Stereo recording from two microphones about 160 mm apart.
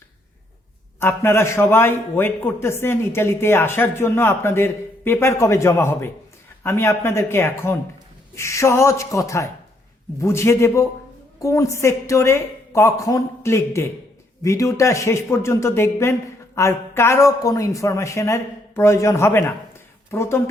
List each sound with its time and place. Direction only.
0.9 s a man's voice: 15° left (ahead or behind)